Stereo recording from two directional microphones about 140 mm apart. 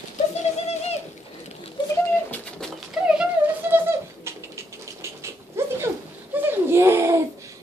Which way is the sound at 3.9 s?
20° right (ahead or behind).